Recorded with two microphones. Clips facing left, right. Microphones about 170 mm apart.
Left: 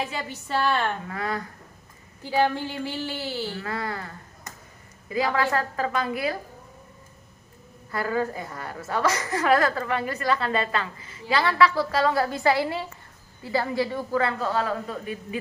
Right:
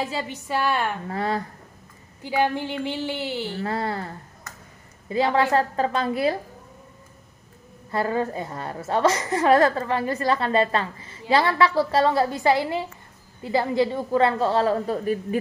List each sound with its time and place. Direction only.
0.0 s speech: 30° right (ahead or behind)
0.3 s a woman's voice: 10° right (ahead or behind)
1.0 s speech: 30° right (ahead or behind)
2.2 s a woman's voice: 15° right (ahead or behind)
5.1 s a woman's voice: 30° right (ahead or behind)
7.9 s a woman's voice: 25° right (ahead or behind)